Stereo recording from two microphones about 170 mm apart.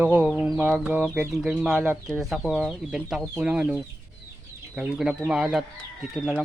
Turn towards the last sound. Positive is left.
turn(degrees=-5)  # may be behind; listen again after turning